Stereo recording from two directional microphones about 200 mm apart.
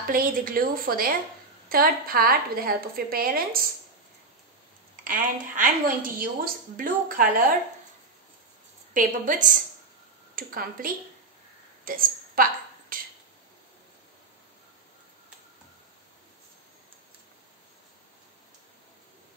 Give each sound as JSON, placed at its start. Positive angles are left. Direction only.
{"t": 0.0, "sound": "a woman's voice", "side_deg": -45}
{"t": 5.0, "sound": "a woman's voice", "side_deg": -45}
{"t": 8.9, "sound": "a woman's voice", "side_deg": -40}
{"t": 11.8, "sound": "a sound", "side_deg": -45}